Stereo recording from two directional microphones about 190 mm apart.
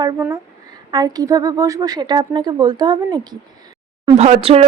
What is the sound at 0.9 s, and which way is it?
Speech, 20° right (ahead or behind).